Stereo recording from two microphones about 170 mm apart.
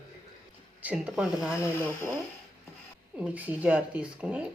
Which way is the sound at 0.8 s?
5° right (ahead or behind).